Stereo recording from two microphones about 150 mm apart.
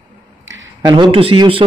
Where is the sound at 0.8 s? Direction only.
30° right (ahead or behind).